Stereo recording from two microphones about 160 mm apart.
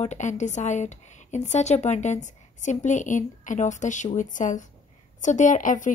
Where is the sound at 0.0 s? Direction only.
50° left (ahead or behind).